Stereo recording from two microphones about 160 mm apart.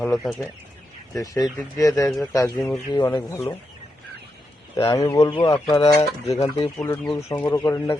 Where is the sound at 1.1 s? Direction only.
20° left (ahead or behind).